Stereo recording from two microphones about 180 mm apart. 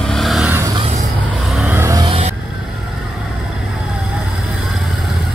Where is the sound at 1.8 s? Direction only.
15° right (ahead or behind).